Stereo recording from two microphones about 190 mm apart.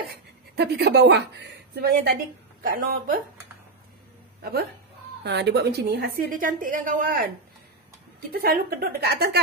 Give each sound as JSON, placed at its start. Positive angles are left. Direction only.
{"t": 0.1, "sound": "a woman's voice", "side_deg": -60}
{"t": 4.4, "sound": "a woman's voice", "side_deg": -55}
{"t": 8.3, "sound": "a woman's voice", "side_deg": -55}